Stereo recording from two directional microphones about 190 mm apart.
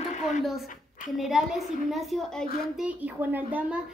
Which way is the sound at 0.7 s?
45° left (ahead or behind).